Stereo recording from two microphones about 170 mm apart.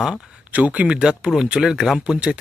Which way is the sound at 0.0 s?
5° right (ahead or behind).